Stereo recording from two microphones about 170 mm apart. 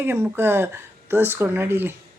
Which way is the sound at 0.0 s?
15° right (ahead or behind).